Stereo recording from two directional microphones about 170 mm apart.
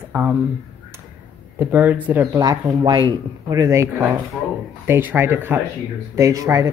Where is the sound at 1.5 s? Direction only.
10° right (ahead or behind).